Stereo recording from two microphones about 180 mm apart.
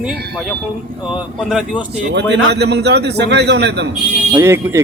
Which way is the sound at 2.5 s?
70° right (ahead or behind).